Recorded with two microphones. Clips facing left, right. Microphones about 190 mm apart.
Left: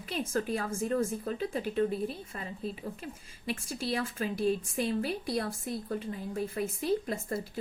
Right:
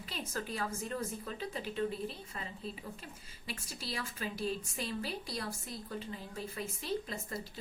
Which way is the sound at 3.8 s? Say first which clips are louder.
Left 8 dB; 50° left (ahead or behind).